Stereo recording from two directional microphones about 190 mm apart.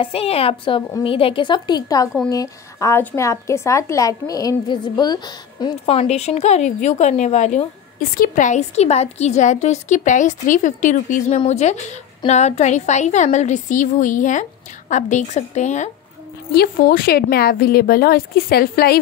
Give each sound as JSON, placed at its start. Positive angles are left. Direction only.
{"t": 0.0, "sound": "a woman's voice", "side_deg": 30}
{"t": 16.5, "sound": "speech", "side_deg": 50}